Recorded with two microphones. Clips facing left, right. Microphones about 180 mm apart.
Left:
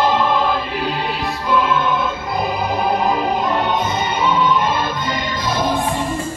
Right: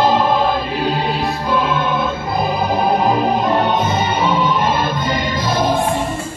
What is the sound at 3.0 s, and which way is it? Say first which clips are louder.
Music: right 3 dB; 30° right (ahead or behind).